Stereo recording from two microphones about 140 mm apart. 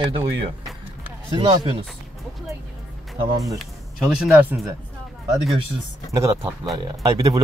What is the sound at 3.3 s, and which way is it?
Speech, 25° right (ahead or behind).